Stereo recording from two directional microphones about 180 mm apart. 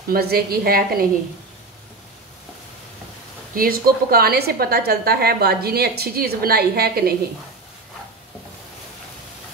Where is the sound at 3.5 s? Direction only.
55° right (ahead or behind).